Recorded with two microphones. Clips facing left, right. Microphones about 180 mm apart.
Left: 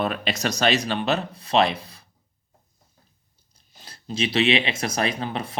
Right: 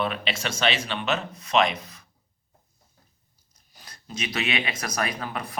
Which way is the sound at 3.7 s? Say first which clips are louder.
Left 6 dB; 30° left (ahead or behind).